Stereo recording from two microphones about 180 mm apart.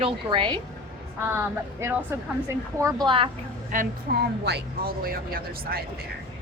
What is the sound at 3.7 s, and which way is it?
Speech, 45° right (ahead or behind).